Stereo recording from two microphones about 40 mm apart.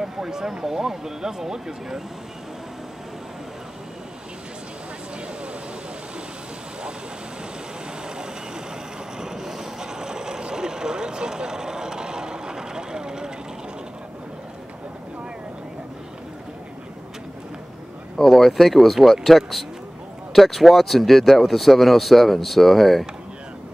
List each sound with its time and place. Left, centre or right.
0.0 s speech: centre
9.2 s vehicle: centre
18.1 s a sound: centre
18.6 s speech: centre